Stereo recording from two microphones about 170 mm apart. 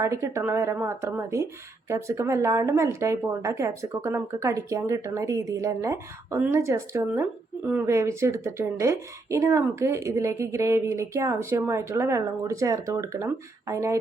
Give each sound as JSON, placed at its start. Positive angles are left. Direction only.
{"t": 0.0, "sound": "speech", "side_deg": -15}